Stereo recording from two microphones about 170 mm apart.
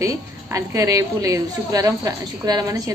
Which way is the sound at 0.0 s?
20° right (ahead or behind).